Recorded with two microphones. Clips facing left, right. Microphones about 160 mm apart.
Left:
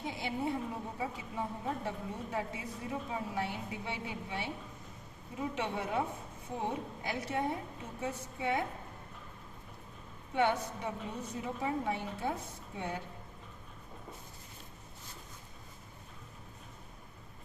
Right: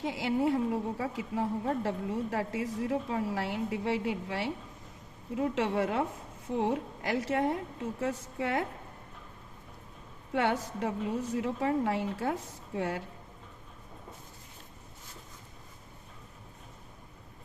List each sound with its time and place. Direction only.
0.0 s a woman's voice: 90° right
10.3 s a woman's voice: 90° right